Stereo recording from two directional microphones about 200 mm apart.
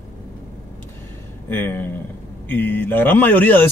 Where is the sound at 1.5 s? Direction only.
10° left (ahead or behind).